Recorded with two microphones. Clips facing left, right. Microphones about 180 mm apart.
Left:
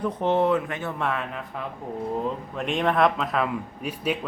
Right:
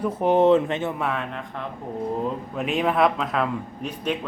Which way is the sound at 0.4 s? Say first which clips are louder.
Right 6 dB; 25° right (ahead or behind).